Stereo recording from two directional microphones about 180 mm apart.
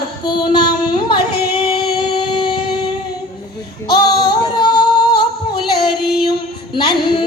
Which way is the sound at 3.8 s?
25° left (ahead or behind).